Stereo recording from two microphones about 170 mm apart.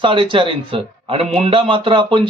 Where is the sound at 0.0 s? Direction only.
30° right (ahead or behind).